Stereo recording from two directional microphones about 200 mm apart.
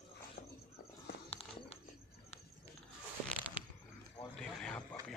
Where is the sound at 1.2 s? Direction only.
30° left (ahead or behind).